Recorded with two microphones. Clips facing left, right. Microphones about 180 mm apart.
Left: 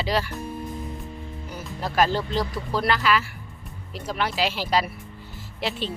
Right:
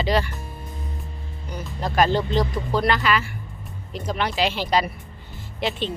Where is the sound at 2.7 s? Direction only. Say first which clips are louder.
Right 1 dB; centre (ahead or behind).